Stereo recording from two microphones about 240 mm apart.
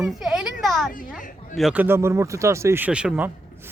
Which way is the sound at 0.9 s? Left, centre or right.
Left.